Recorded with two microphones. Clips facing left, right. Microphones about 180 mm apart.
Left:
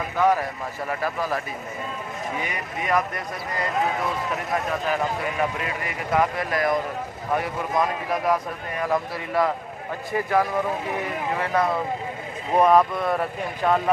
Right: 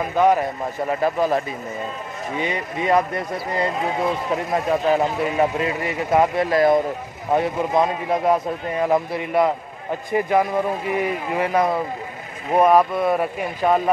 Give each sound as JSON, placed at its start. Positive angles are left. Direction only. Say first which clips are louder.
{"t": 0.1, "sound": "speech", "louder": "right 4 dB", "side_deg": -20}